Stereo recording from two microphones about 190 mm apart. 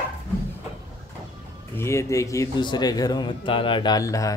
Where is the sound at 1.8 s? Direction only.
15° left (ahead or behind).